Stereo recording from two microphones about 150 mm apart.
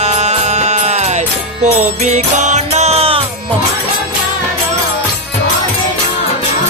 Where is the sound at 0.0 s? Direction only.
45° right (ahead or behind).